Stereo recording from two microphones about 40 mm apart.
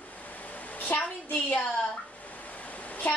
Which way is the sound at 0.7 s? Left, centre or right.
Left.